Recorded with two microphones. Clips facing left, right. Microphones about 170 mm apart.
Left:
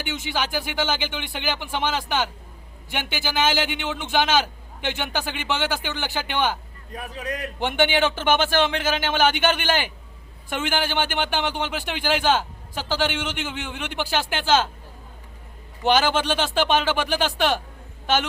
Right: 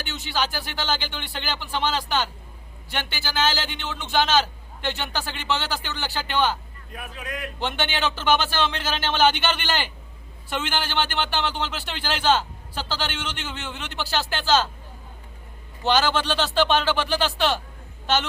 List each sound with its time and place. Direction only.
0.3 s a man's voice: 15° left (ahead or behind)
6.9 s a man's voice: 40° left (ahead or behind)
7.6 s a man's voice: 10° left (ahead or behind)
15.8 s a man's voice: 15° left (ahead or behind)